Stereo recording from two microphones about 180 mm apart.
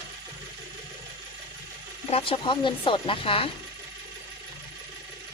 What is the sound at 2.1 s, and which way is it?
Speech, 30° left (ahead or behind).